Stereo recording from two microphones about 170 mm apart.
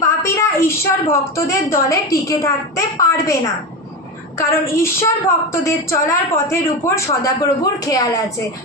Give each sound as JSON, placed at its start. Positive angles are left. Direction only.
{"t": 0.2, "sound": "a sound", "side_deg": 15}
{"t": 1.1, "sound": "a woman's voice", "side_deg": 15}
{"t": 4.4, "sound": "a woman's voice", "side_deg": 15}